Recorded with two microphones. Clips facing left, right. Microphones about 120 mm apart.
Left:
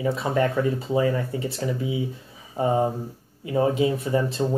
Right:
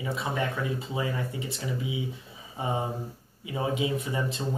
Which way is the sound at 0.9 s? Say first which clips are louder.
Left 9 dB; 45° left (ahead or behind).